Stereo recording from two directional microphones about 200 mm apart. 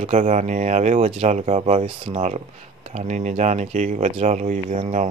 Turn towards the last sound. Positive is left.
turn(degrees=-35)  # may be behind; listen again after turning